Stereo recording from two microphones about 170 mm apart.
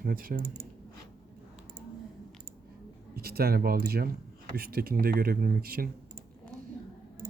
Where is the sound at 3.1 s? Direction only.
65° right (ahead or behind).